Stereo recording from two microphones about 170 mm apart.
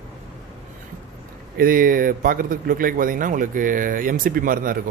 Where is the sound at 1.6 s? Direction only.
55° right (ahead or behind).